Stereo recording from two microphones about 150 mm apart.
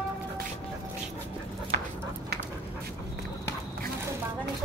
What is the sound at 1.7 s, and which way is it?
Dog, 90° right.